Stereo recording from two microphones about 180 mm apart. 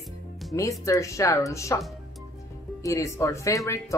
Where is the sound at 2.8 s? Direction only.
15° left (ahead or behind).